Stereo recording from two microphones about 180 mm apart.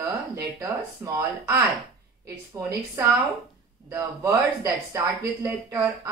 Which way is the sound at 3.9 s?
15° right (ahead or behind).